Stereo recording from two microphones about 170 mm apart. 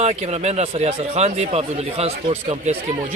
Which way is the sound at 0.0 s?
40° right (ahead or behind).